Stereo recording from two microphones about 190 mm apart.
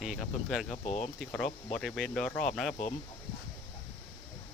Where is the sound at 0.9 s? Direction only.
40° left (ahead or behind).